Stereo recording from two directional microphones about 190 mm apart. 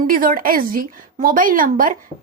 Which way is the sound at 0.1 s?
45° right (ahead or behind).